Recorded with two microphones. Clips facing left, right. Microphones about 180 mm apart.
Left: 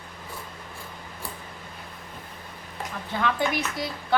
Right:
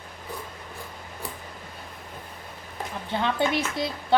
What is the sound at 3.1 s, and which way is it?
Speech, 25° right (ahead or behind).